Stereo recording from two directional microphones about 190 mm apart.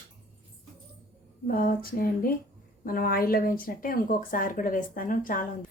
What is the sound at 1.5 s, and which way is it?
A woman's voice, 50° left (ahead or behind).